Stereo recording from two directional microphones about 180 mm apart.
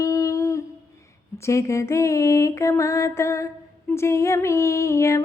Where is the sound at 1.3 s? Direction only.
15° left (ahead or behind).